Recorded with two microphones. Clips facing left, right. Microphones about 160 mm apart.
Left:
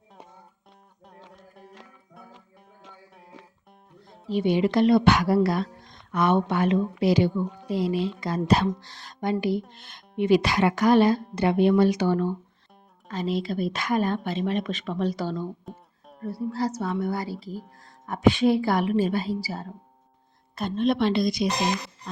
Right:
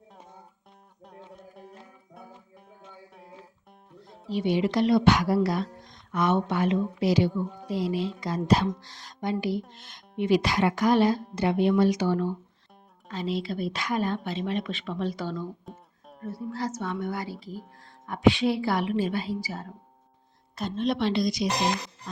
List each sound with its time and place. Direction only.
1.3 s music: centre (ahead or behind)
4.3 s a woman's voice: 55° left (ahead or behind); by 15.4 s 35° left (ahead or behind)
15.6 s music: centre (ahead or behind)
16.2 s a woman's voice: 35° left (ahead or behind)
20.6 s speech: 55° left (ahead or behind)